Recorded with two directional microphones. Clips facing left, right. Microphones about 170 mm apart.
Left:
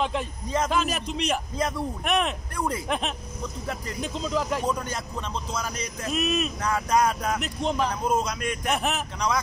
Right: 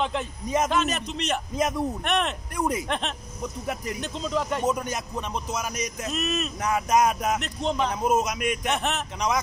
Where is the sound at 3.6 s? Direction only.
15° right (ahead or behind).